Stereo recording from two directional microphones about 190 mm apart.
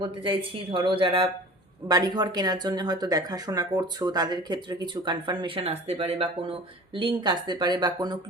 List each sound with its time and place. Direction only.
0.0 s speech: 25° right (ahead or behind)